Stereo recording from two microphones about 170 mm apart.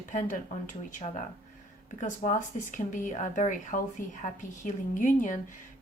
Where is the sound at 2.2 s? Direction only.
45° left (ahead or behind).